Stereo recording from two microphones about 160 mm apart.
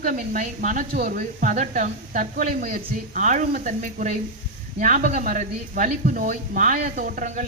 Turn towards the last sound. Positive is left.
turn(degrees=-50)  # may be behind; listen again after turning